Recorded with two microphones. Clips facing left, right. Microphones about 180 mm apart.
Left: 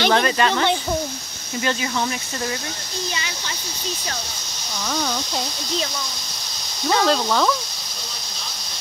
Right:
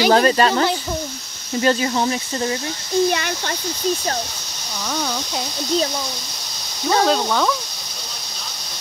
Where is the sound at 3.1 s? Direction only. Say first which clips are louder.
Right 8 dB; 55° right (ahead or behind).